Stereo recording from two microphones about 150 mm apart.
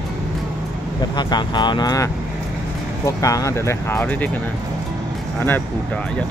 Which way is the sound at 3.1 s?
20° left (ahead or behind).